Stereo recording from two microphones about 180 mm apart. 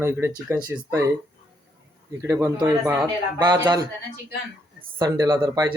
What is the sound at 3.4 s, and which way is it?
Speech, 25° right (ahead or behind).